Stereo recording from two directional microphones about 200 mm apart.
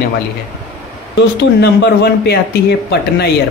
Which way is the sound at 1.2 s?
55° left (ahead or behind).